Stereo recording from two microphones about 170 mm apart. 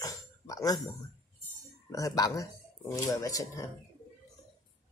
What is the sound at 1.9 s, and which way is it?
Speech, 20° left (ahead or behind).